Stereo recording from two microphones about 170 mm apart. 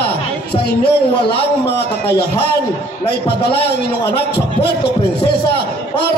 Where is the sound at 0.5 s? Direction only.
70° left (ahead or behind).